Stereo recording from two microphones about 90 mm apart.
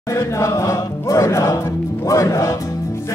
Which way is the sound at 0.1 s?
35° left (ahead or behind).